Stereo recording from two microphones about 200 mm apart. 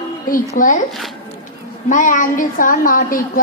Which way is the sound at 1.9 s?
40° left (ahead or behind).